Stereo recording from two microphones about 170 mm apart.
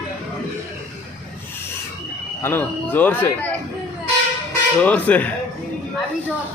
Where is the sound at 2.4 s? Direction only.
10° left (ahead or behind).